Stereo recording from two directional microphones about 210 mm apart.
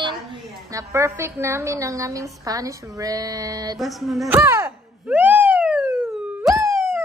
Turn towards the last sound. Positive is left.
turn(degrees=-15)  # may be behind; listen again after turning